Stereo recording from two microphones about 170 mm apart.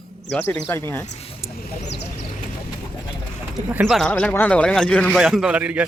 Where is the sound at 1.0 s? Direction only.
40° left (ahead or behind).